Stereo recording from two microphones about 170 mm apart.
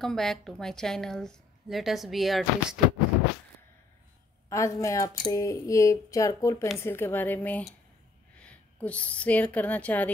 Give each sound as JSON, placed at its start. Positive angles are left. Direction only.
{"t": 0.0, "sound": "a woman's voice", "side_deg": 0}
{"t": 4.5, "sound": "speech", "side_deg": 20}